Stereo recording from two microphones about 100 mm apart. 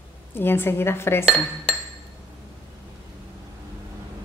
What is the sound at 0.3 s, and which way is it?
Speech, 20° left (ahead or behind).